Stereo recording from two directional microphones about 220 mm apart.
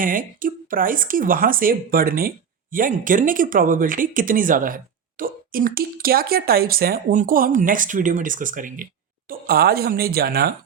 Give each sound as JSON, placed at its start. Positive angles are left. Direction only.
{"t": 0.0, "sound": "speech", "side_deg": -40}